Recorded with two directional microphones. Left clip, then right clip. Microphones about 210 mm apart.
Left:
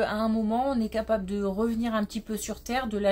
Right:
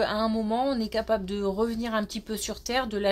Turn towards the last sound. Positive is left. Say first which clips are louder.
# right 2 dB
turn(degrees=-25)  # may be behind; listen again after turning